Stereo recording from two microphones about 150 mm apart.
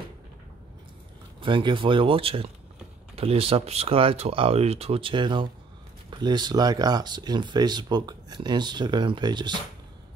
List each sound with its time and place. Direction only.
1.4 s speech: 35° right (ahead or behind)